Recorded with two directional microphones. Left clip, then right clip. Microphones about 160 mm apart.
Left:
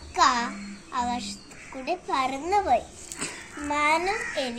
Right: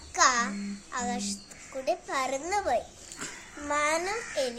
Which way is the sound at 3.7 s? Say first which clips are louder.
Left 4 dB; 30° right (ahead or behind).